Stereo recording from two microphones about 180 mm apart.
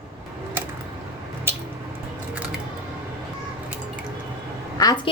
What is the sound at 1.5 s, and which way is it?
Squish, 15° right (ahead or behind).